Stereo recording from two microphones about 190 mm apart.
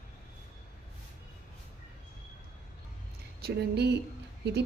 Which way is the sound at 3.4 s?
60° right (ahead or behind).